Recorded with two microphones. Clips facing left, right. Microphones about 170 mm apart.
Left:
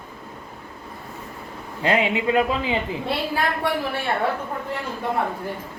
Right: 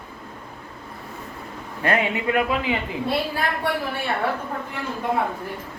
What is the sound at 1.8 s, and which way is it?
Speech, 20° left (ahead or behind).